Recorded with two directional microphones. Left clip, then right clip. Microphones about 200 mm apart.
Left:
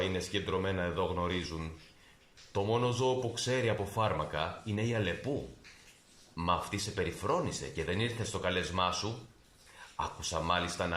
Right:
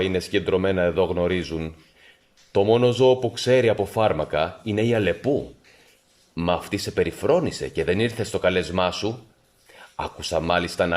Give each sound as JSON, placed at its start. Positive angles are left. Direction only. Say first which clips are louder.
{"t": 0.0, "sound": "speech", "louder": "right 11 dB", "side_deg": -50}
{"t": 6.3, "sound": "speech", "louder": "right 8 dB", "side_deg": -45}